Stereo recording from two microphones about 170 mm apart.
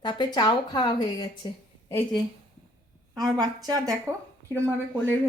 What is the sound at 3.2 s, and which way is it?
Speech, 20° right (ahead or behind).